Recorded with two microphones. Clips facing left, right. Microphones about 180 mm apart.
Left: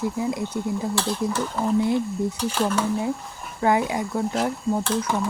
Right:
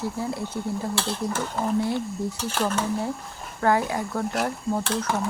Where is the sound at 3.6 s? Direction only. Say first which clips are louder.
Left 1 dB; 15° left (ahead or behind).